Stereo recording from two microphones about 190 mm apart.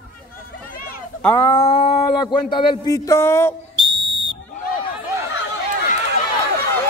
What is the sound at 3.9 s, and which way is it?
Whistle, 25° right (ahead or behind).